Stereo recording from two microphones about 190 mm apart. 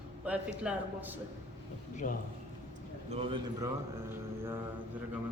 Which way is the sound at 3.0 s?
30° right (ahead or behind).